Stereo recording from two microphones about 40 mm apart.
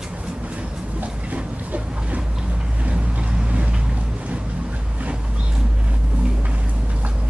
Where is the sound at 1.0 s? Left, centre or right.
Right.